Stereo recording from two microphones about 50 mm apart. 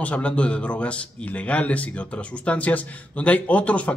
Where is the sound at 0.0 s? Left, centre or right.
Left.